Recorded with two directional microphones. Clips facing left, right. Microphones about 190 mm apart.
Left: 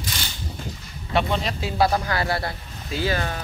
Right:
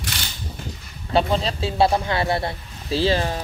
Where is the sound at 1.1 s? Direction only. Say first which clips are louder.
Right 3 dB; 30° right (ahead or behind).